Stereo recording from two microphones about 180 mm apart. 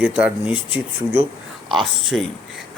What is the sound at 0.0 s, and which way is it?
Speech, 5° right (ahead or behind).